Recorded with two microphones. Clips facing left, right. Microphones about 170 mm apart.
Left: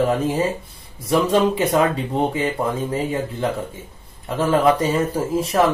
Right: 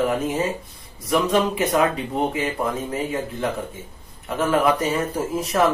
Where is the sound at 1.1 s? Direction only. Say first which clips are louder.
Left 3 dB; 30° left (ahead or behind).